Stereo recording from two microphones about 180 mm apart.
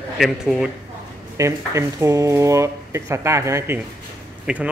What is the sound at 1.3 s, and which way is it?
Speech, 15° right (ahead or behind).